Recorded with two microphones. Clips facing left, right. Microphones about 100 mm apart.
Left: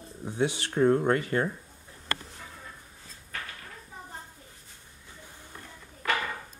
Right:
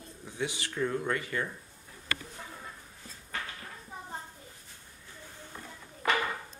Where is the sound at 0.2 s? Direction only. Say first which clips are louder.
Left 7 dB; 35° left (ahead or behind).